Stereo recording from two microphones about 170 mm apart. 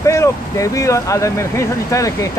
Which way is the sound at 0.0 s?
20° left (ahead or behind).